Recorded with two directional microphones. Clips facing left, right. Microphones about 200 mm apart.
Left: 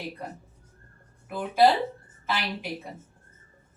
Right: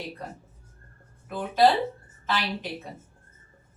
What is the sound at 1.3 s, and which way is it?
A woman's voice, 10° left (ahead or behind).